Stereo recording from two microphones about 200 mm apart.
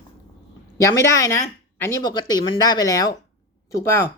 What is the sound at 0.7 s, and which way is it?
Speech, 15° left (ahead or behind).